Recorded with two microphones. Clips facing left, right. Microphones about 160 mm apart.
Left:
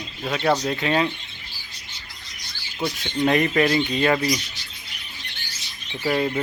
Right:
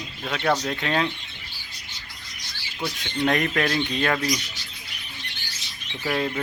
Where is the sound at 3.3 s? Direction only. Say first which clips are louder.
Left 5 dB; 5° left (ahead or behind).